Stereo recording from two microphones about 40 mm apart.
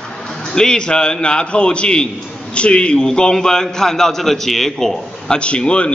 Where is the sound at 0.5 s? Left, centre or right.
Centre.